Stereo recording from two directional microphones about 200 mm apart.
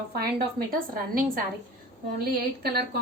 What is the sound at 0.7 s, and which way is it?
A woman's voice, 45° right (ahead or behind).